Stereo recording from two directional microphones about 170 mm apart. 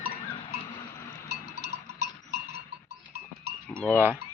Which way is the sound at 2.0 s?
75° right (ahead or behind).